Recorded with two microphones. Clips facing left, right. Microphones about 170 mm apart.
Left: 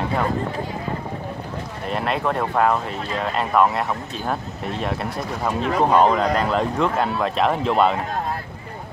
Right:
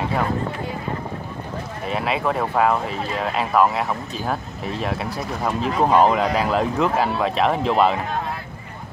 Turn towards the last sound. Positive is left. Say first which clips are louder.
# even
turn(degrees=0)  # may be behind; listen again after turning